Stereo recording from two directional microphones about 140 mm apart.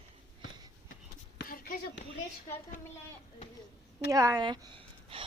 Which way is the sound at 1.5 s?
85° left.